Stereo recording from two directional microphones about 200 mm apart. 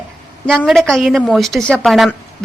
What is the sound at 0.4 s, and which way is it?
A woman's voice, centre (ahead or behind).